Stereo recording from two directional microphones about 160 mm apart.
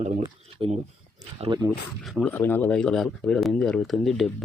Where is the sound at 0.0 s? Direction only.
40° right (ahead or behind).